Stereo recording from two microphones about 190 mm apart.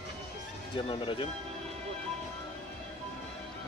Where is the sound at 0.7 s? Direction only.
25° left (ahead or behind).